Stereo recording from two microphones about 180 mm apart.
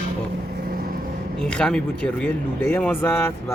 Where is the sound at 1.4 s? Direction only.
5° left (ahead or behind).